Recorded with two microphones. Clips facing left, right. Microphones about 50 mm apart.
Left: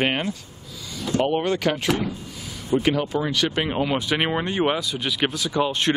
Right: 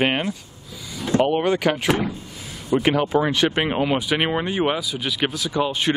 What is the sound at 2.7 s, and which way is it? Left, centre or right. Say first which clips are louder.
Speech: right 3 dB; right.